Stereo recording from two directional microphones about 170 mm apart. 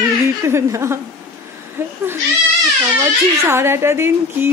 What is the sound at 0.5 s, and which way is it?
Speech, 15° right (ahead or behind).